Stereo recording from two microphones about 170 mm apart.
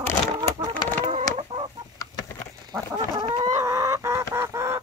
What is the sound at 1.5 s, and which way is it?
Chicken, 25° right (ahead or behind).